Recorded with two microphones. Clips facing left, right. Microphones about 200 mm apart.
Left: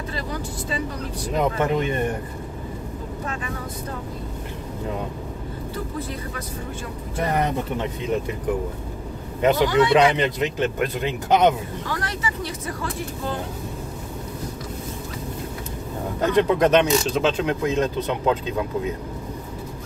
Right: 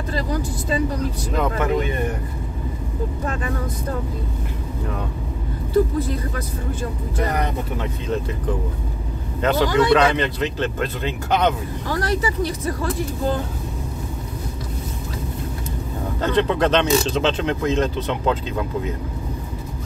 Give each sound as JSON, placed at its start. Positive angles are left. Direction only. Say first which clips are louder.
{"t": 1.3, "sound": "speech", "louder": "left 1 dB", "side_deg": 20}
{"t": 9.4, "sound": "speech", "louder": "even", "side_deg": 15}
{"t": 11.9, "sound": "speech", "louder": "right 8 dB", "side_deg": -40}
{"t": 16.2, "sound": "speech", "louder": "left 1 dB", "side_deg": 15}